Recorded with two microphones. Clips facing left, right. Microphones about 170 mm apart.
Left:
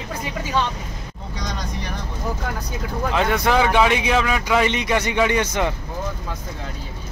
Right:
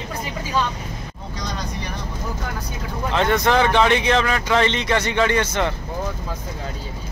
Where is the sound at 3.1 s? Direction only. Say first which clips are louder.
Right 1 dB; 5° left (ahead or behind).